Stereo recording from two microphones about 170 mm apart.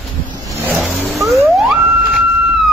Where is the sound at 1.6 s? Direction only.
Centre (ahead or behind).